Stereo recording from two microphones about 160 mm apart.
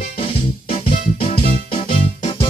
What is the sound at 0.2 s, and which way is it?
Music, 40° left (ahead or behind).